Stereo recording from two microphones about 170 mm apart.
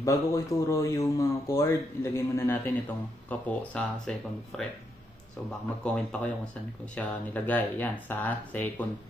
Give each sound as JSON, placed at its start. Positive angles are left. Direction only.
{"t": 0.0, "sound": "speech", "side_deg": 20}
{"t": 5.9, "sound": "speech", "side_deg": 5}